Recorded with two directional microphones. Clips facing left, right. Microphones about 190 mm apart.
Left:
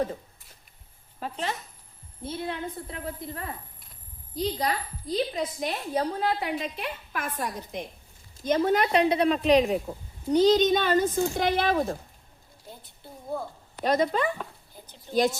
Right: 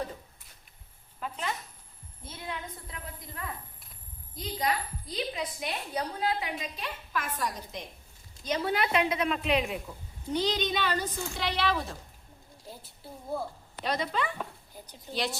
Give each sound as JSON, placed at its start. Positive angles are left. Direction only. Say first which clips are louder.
{"t": 1.2, "sound": "a woman's voice", "louder": "left 3 dB", "side_deg": 30}
{"t": 6.4, "sound": "a woman's voice", "louder": "left 6 dB", "side_deg": 60}
{"t": 12.8, "sound": "a woman's voice", "louder": "left 1 dB", "side_deg": -5}
{"t": 13.8, "sound": "a woman's voice", "louder": "left 7 dB", "side_deg": 45}